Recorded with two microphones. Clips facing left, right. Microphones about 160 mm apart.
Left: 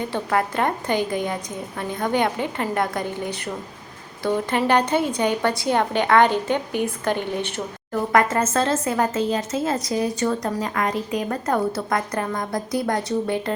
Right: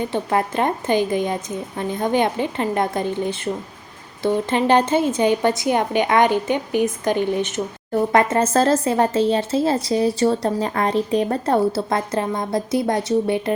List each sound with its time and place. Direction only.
0.1 s a woman's voice: 20° right (ahead or behind)
8.1 s a woman's voice: 30° right (ahead or behind)